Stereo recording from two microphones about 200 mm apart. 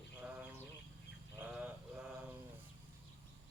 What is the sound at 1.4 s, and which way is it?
Mantra, 10° right (ahead or behind).